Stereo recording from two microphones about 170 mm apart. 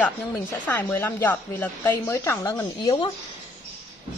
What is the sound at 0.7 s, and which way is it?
Speech, 10° left (ahead or behind).